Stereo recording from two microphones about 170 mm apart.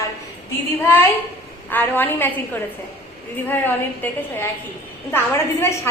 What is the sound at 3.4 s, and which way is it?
A woman's voice, 10° left (ahead or behind).